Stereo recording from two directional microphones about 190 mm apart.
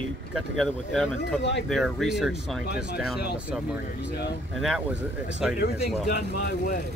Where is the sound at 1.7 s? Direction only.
Centre (ahead or behind).